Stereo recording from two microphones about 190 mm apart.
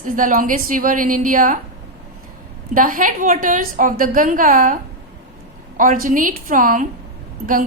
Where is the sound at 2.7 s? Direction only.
45° right (ahead or behind).